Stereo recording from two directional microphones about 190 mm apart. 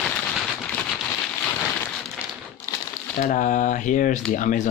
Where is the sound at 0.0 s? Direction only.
Centre (ahead or behind).